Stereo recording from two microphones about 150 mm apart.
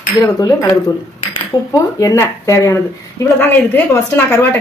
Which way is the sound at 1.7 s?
20° left (ahead or behind).